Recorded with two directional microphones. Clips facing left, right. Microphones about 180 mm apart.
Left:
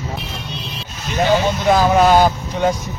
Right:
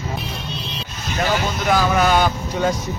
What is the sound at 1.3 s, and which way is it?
Speech, 25° left (ahead or behind).